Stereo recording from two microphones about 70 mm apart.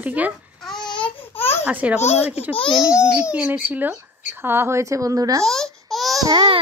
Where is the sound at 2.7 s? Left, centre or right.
Centre.